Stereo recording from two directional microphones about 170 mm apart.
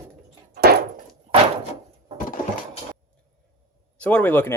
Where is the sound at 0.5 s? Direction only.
65° right (ahead or behind).